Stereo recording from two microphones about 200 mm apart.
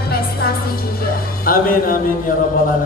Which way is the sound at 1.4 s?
45° left (ahead or behind).